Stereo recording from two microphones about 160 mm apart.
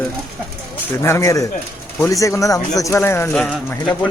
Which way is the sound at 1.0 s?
20° left (ahead or behind).